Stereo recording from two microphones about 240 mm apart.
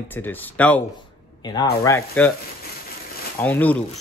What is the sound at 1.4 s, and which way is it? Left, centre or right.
Speech, centre.